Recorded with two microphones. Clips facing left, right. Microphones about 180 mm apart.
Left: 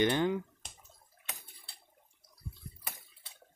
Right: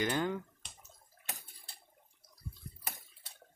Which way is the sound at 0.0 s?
20° left (ahead or behind).